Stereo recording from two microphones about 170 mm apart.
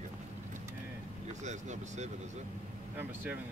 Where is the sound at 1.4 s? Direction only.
45° right (ahead or behind).